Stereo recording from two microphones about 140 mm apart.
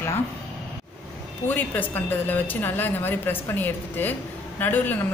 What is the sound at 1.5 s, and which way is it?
A woman's voice, 15° left (ahead or behind).